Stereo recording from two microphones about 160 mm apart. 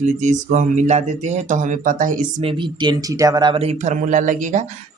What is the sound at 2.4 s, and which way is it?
Speech, 30° right (ahead or behind).